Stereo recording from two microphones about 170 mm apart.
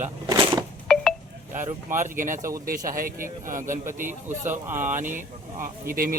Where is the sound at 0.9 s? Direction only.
5° left (ahead or behind).